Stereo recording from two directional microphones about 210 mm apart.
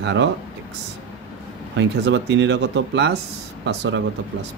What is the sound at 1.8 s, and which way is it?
Speech, 55° right (ahead or behind).